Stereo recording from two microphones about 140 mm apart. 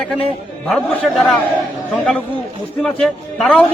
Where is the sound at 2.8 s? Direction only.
5° left (ahead or behind).